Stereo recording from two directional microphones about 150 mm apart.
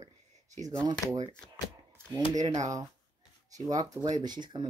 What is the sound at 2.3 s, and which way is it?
Speech, 25° right (ahead or behind).